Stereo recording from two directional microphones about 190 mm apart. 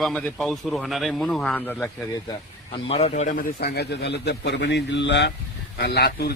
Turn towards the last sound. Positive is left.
turn(degrees=55)  # may be behind; listen again after turning